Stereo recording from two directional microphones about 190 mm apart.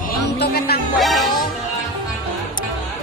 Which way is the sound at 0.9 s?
Centre (ahead or behind).